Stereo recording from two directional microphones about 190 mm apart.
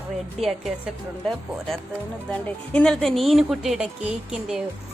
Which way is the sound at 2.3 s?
5° left (ahead or behind).